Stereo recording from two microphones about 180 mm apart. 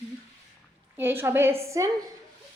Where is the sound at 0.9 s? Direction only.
10° right (ahead or behind).